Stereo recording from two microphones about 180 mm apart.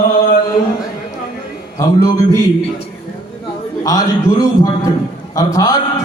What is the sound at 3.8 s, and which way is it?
A man's voice, 20° left (ahead or behind).